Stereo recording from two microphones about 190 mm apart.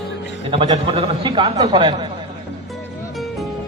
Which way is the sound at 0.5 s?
30° right (ahead or behind).